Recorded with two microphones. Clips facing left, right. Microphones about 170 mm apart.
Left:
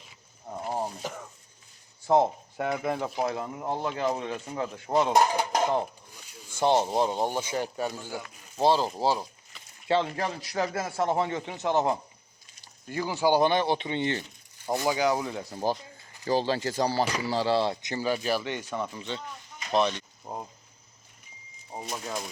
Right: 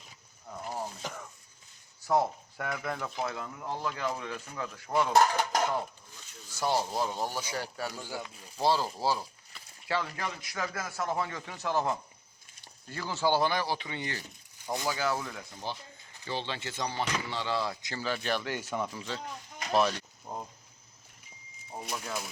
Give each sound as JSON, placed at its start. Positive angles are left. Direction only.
{"t": 0.4, "sound": "wild animals", "side_deg": 35}
{"t": 1.0, "sound": "a sound", "side_deg": 15}
{"t": 2.0, "sound": "speech", "side_deg": 25}
{"t": 5.1, "sound": "dishes", "side_deg": 15}
{"t": 6.5, "sound": "speech", "side_deg": 25}
{"t": 15.4, "sound": "speech", "side_deg": 40}
{"t": 17.9, "sound": "speech", "side_deg": 15}
{"t": 20.2, "sound": "speech", "side_deg": 15}
{"t": 21.8, "sound": "speech", "side_deg": 20}